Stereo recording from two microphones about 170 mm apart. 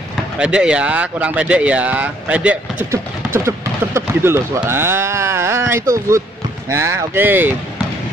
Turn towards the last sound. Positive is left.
turn(degrees=-10)  # may be behind; listen again after turning